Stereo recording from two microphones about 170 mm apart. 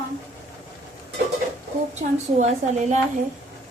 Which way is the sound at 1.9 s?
45° right (ahead or behind).